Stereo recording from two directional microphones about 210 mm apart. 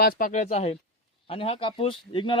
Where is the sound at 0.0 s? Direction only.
45° left (ahead or behind).